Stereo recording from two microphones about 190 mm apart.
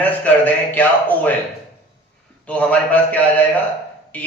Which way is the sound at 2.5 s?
5° left (ahead or behind).